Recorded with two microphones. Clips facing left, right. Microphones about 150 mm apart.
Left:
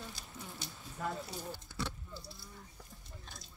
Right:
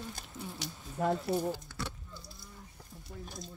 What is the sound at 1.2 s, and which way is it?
Speech, 65° right (ahead or behind).